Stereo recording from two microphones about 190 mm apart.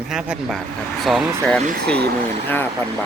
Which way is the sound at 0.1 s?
Centre (ahead or behind).